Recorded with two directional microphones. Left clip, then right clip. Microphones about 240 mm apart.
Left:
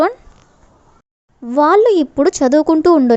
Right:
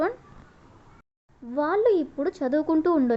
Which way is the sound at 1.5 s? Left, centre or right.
Left.